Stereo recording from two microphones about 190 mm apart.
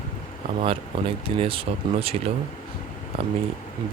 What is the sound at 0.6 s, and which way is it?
Speech, 30° right (ahead or behind).